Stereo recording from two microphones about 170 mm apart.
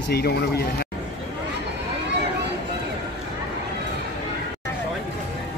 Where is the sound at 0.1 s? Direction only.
70° left (ahead or behind).